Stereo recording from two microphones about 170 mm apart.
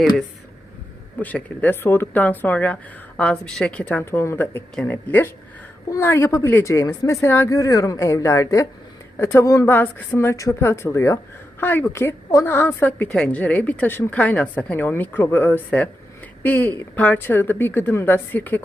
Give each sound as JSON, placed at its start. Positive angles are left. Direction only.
{"t": 1.2, "sound": "a woman's voice", "side_deg": 10}